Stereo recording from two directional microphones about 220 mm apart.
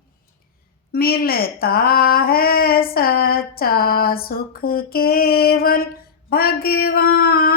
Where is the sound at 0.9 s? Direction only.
45° left (ahead or behind).